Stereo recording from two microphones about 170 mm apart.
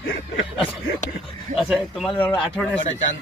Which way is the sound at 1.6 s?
Centre (ahead or behind).